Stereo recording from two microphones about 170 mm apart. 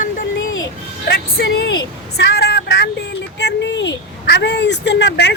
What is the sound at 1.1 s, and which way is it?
A woman's voice, 70° left (ahead or behind).